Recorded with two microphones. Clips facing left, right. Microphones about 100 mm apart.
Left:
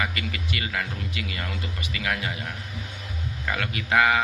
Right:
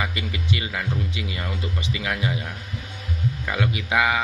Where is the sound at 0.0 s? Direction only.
25° right (ahead or behind).